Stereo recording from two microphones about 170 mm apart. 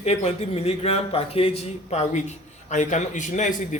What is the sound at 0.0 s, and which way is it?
Speech, 40° left (ahead or behind).